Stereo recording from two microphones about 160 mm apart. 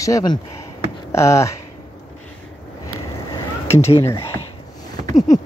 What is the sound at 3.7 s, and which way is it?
Speech, 15° left (ahead or behind).